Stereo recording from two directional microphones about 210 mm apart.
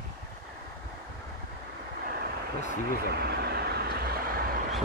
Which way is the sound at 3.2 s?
50° right (ahead or behind).